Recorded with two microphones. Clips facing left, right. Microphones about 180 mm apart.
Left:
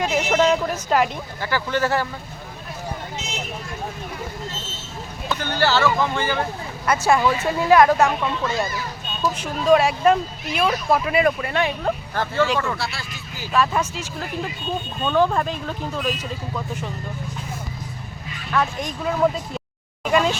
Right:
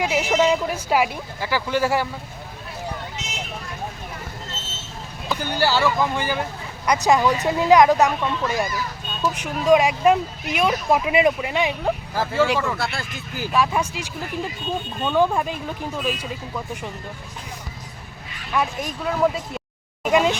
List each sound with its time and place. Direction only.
0.0 s speech: 10° right (ahead or behind)
5.3 s speech: 10° right (ahead or behind)
12.8 s speech: 50° right (ahead or behind)
13.5 s speech: 10° right (ahead or behind)
18.5 s speech: 5° right (ahead or behind)
20.1 s a sound: 15° right (ahead or behind)